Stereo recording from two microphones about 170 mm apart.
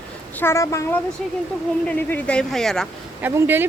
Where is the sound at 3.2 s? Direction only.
10° right (ahead or behind).